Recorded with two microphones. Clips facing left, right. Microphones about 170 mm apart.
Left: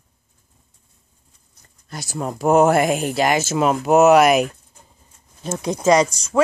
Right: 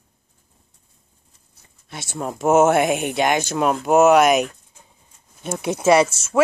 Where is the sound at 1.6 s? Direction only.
Centre (ahead or behind).